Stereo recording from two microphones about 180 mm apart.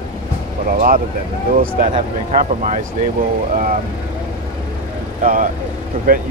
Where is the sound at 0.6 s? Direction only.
45° right (ahead or behind).